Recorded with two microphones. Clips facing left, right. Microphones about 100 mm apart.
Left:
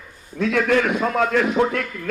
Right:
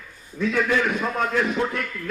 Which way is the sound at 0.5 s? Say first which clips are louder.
Left 4 dB; 80° left.